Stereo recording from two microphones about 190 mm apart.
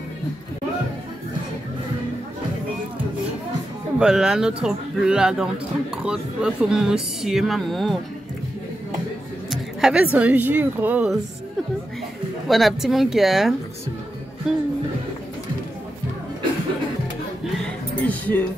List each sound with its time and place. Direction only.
4.0 s speech: 5° right (ahead or behind)
9.5 s chatter: centre (ahead or behind)
10.1 s speech: 10° right (ahead or behind)
12.4 s speech: centre (ahead or behind)
17.6 s a sound: 10° left (ahead or behind)